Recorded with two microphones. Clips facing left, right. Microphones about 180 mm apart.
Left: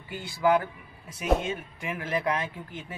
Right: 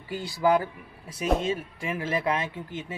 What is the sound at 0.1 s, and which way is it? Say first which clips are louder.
A man's voice: right 1 dB; 35° right (ahead or behind).